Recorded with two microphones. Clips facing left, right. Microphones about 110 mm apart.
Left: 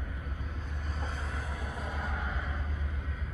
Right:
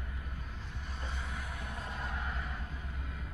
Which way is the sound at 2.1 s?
25° left (ahead or behind).